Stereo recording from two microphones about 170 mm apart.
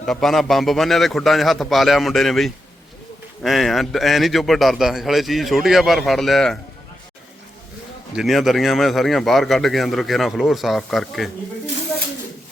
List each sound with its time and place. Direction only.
0.0 s a man's voice: centre (ahead or behind)
8.1 s a man's voice: centre (ahead or behind)